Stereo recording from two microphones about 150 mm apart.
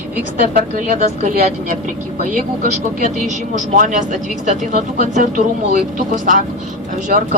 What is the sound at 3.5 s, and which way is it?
Speech, 60° right (ahead or behind).